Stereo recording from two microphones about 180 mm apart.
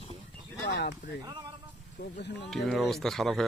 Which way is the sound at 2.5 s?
Centre (ahead or behind).